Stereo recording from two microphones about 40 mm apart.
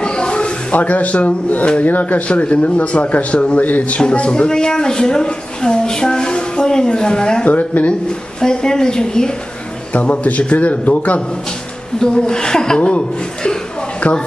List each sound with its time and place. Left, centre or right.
0.0 s a sound: left
0.7 s speech: left
4.0 s a woman's voice: left
7.4 s speech: left
8.4 s a woman's voice: centre
9.9 s speech: left
12.0 s a woman's voice: centre